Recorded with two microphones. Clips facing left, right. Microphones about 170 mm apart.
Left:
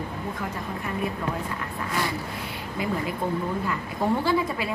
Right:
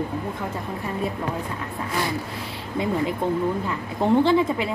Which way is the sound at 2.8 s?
25° right (ahead or behind).